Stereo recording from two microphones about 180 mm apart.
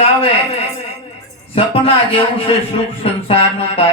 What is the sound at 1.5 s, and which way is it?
A man's voice, 30° left (ahead or behind).